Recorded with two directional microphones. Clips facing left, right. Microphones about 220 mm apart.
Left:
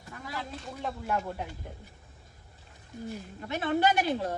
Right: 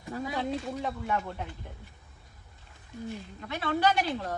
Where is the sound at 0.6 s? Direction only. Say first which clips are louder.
Right 3 dB; centre (ahead or behind).